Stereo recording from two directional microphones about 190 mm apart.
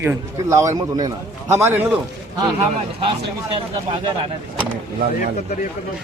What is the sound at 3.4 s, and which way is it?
Speech, 30° right (ahead or behind).